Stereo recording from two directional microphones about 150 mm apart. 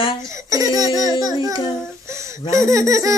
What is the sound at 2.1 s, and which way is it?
Speech, 20° right (ahead or behind).